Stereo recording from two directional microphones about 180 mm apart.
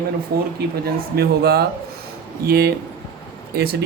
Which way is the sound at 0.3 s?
60° right (ahead or behind).